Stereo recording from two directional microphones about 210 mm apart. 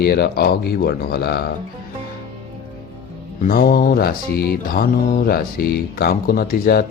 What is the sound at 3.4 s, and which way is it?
Speech, 45° left (ahead or behind).